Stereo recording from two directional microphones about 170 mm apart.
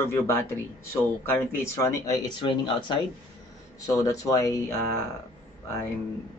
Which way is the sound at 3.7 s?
20° left (ahead or behind).